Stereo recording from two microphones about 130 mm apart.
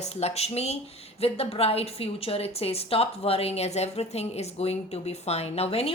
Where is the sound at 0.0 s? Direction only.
55° left (ahead or behind).